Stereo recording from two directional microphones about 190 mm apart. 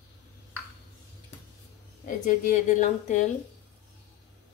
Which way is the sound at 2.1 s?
40° left (ahead or behind).